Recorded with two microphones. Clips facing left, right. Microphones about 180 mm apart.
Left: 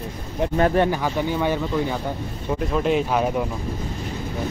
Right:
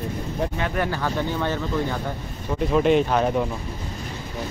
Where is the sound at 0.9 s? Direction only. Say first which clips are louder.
Left 2 dB; 10° left (ahead or behind).